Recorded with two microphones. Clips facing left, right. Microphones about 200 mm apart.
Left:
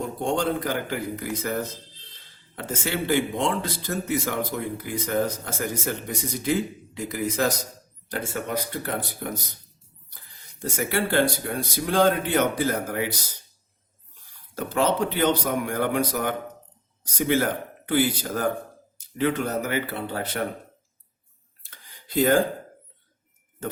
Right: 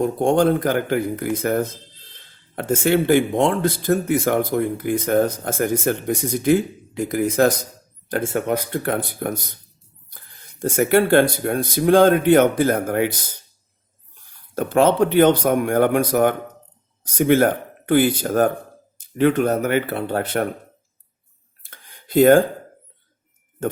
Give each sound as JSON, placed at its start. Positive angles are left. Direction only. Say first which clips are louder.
{"t": 0.0, "sound": "speech", "louder": "right 8 dB", "side_deg": -50}
{"t": 14.5, "sound": "speech", "louder": "right 7 dB", "side_deg": -55}
{"t": 21.6, "sound": "a sound", "louder": "right 4 dB", "side_deg": -55}